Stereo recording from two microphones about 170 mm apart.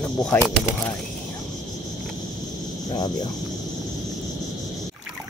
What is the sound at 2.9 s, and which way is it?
Speech, 25° left (ahead or behind).